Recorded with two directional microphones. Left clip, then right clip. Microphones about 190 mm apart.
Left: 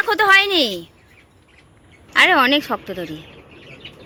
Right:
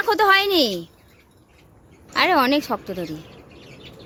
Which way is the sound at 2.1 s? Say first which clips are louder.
Left 4 dB; 10° right (ahead or behind).